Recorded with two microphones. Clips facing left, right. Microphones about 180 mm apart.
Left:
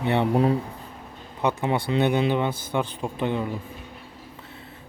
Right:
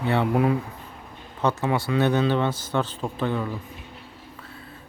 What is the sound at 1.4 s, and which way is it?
Speech, 15° left (ahead or behind).